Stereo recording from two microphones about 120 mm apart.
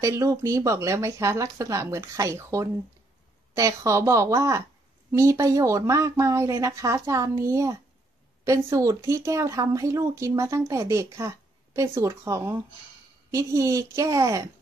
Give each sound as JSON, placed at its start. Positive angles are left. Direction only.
{"t": 0.0, "sound": "speech", "side_deg": -25}